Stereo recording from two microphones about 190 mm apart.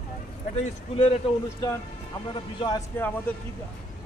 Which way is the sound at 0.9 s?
35° left (ahead or behind).